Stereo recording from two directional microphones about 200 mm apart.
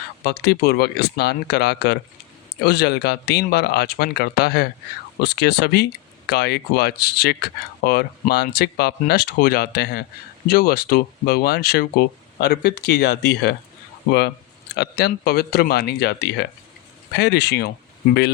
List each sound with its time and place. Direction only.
0.3 s speech: 55° left (ahead or behind)
14.8 s speech: 50° left (ahead or behind)